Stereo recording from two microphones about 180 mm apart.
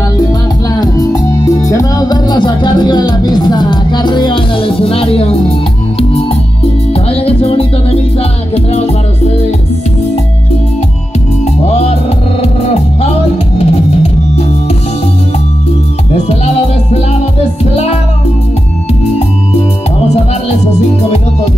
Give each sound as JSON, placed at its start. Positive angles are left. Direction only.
{"t": 0.7, "sound": "music", "side_deg": 20}
{"t": 11.4, "sound": "music", "side_deg": 35}
{"t": 16.2, "sound": "music", "side_deg": 35}